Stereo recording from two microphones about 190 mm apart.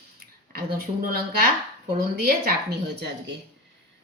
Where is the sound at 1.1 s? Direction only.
55° right (ahead or behind).